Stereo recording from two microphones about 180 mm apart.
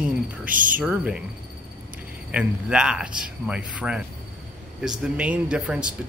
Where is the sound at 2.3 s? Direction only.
5° right (ahead or behind).